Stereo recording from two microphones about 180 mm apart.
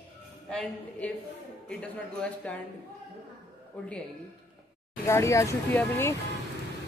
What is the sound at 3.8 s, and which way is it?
Speech, 5° left (ahead or behind).